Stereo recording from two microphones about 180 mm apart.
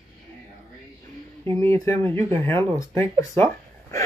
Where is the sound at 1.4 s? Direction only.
15° left (ahead or behind).